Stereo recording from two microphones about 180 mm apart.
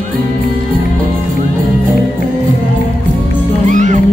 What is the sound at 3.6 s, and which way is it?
Music, 45° right (ahead or behind).